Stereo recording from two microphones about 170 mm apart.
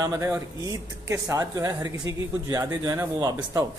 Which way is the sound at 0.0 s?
20° right (ahead or behind).